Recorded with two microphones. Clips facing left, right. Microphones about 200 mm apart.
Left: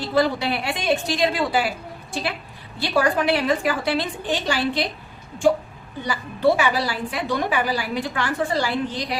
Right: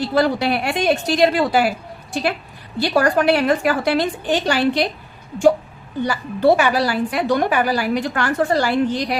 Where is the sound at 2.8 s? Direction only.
50° right (ahead or behind).